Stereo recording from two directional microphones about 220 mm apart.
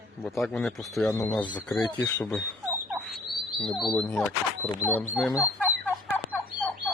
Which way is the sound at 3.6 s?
Centre (ahead or behind).